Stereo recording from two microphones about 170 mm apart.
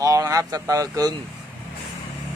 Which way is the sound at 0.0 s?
20° right (ahead or behind).